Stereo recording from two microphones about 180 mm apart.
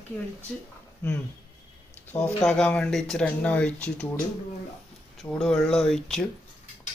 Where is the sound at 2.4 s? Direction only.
5° left (ahead or behind).